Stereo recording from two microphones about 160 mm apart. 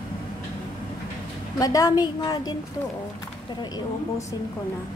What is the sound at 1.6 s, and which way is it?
Speech, 20° left (ahead or behind).